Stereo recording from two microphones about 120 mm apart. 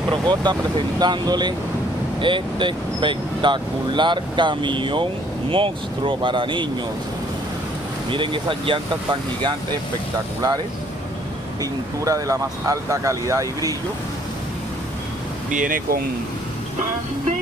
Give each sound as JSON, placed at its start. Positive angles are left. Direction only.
{"t": 0.1, "sound": "speech", "side_deg": -40}
{"t": 8.1, "sound": "speech", "side_deg": -45}
{"t": 12.0, "sound": "speech", "side_deg": -25}